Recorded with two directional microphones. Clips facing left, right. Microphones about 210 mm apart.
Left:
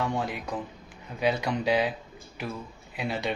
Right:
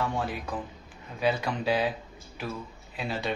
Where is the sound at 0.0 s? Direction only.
15° left (ahead or behind).